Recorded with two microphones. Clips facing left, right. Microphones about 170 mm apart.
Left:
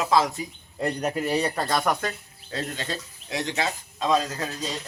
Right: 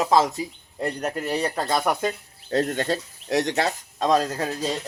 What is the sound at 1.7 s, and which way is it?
Speech, 20° right (ahead or behind).